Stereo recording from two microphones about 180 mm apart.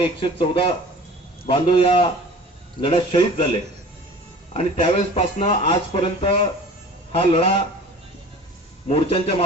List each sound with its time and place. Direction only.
0.0 s speech: 30° left (ahead or behind)
4.5 s speech: 35° left (ahead or behind)
8.9 s speech: 30° left (ahead or behind)